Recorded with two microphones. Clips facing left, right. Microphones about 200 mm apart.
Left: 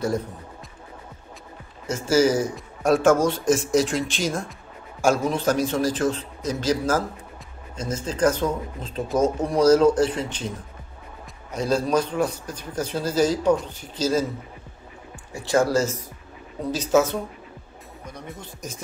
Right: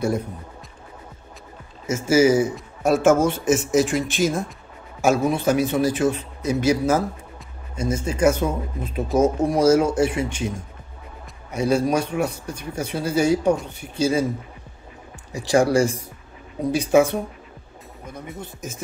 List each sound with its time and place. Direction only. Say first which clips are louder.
1.9 s a man's voice: right 3 dB; 10° right (ahead or behind)
3.7 s speech: right 2 dB; 55° right (ahead or behind)
5.0 s a man's voice: right 2 dB; 10° right (ahead or behind)
11.5 s a man's voice: right 2 dB; 10° right (ahead or behind)
15.3 s a man's voice: right 3 dB; 15° right (ahead or behind)